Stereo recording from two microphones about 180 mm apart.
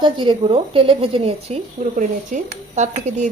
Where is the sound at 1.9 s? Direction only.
45° right (ahead or behind).